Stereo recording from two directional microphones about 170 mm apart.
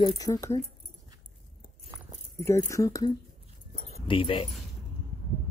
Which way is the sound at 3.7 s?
30° left (ahead or behind).